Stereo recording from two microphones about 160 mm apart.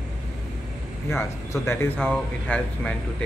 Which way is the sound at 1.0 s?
15° left (ahead or behind).